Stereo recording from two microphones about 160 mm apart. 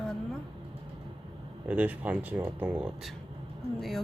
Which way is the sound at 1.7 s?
10° right (ahead or behind).